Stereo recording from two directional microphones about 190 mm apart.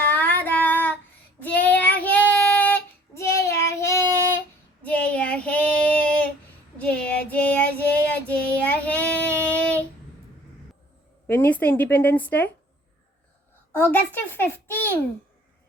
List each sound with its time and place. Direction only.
0.1 s female singing: 10° left (ahead or behind)
1.4 s child singing: 10° left (ahead or behind)
3.2 s child singing: 60° left (ahead or behind)
3.5 s child singing: 15° left (ahead or behind)
11.3 s a woman's voice: 10° left (ahead or behind)
13.7 s a woman's voice: 10° left (ahead or behind)